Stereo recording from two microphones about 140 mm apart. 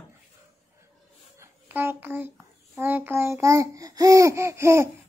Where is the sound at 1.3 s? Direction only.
15° right (ahead or behind).